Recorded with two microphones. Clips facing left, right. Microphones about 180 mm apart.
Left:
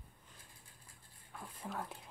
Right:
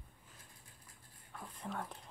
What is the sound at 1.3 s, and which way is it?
Dog, 5° left (ahead or behind).